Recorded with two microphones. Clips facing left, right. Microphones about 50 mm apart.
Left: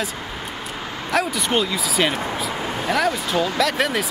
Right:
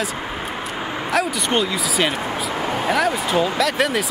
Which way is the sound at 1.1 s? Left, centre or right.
Centre.